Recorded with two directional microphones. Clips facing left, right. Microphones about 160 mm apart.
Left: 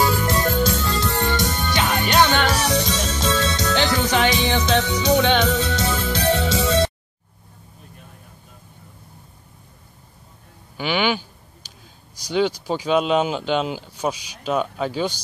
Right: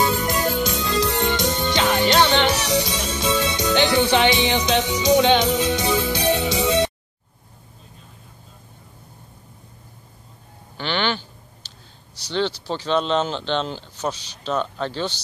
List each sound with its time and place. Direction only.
0.0 s music: 20° right (ahead or behind)
10.8 s a sound: 10° left (ahead or behind)
12.2 s speech: 10° left (ahead or behind)